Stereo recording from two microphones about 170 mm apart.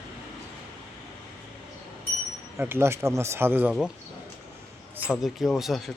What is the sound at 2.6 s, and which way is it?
Speech, 15° right (ahead or behind).